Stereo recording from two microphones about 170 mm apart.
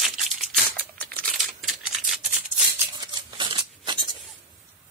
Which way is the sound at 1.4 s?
Centre (ahead or behind).